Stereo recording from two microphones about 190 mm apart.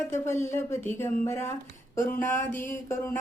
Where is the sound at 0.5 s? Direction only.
15° left (ahead or behind).